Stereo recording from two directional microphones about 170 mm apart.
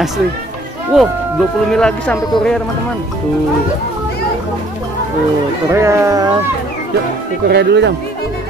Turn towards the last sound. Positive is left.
turn(degrees=-80)